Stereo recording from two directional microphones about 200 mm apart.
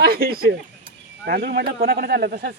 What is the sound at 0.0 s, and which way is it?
Speech, 50° right (ahead or behind).